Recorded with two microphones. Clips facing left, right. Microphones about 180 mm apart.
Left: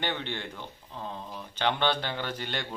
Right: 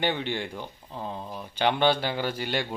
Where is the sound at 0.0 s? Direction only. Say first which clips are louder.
Right 5 dB; 10° right (ahead or behind).